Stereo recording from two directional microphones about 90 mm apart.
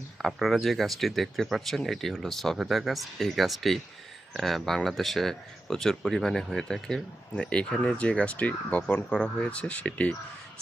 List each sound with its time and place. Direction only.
0.2 s speech: centre (ahead or behind); by 10.2 s 15° left (ahead or behind)